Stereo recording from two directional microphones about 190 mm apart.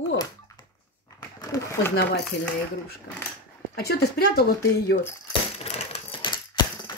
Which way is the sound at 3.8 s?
60° left (ahead or behind).